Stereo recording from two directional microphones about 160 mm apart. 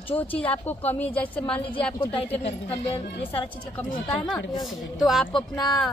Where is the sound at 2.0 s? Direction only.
35° left (ahead or behind).